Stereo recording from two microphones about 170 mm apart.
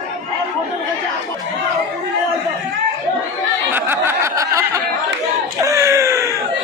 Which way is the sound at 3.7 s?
15° right (ahead or behind).